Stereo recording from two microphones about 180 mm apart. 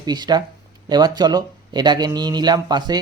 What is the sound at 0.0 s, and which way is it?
Speech, 20° right (ahead or behind).